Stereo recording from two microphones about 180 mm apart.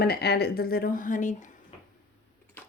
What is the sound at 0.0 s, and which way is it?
Speech, 65° left (ahead or behind).